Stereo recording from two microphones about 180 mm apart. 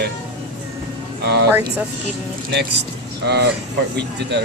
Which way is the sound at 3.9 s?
70° right (ahead or behind).